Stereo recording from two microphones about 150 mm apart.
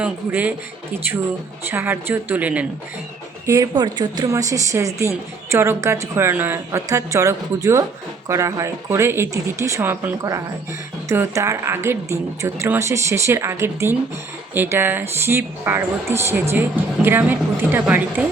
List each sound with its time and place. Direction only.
0.0 s speech: 10° right (ahead or behind)
3.4 s speech: 25° right (ahead or behind); by 18.3 s 10° right (ahead or behind)